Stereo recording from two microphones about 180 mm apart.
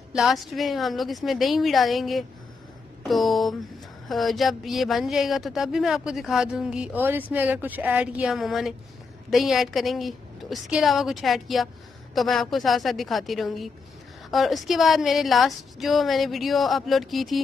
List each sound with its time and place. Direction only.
0.1 s a woman's voice: centre (ahead or behind)